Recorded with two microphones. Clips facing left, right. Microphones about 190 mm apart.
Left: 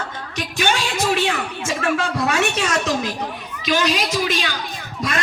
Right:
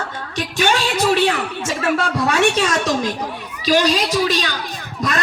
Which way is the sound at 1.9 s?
35° right (ahead or behind).